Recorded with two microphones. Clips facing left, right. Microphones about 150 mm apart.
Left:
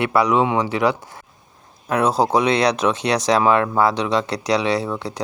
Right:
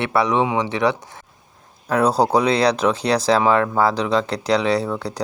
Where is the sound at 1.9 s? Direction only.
35° right (ahead or behind).